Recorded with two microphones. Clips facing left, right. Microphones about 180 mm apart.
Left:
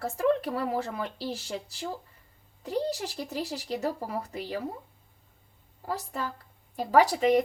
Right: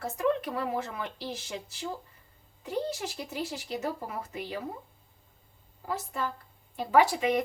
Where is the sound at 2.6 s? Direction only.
35° left (ahead or behind).